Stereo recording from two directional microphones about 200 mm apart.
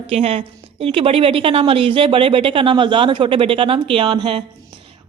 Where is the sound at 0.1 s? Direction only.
30° right (ahead or behind).